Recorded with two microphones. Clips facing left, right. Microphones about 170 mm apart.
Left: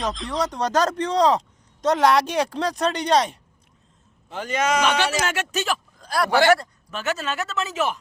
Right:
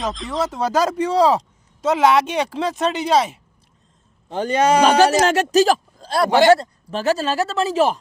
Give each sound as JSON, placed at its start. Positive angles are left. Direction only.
{"t": 0.0, "sound": "speech", "side_deg": 0}
{"t": 4.3, "sound": "speech", "side_deg": -35}